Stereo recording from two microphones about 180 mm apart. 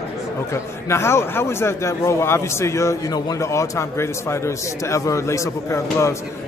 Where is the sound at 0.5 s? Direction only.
15° left (ahead or behind).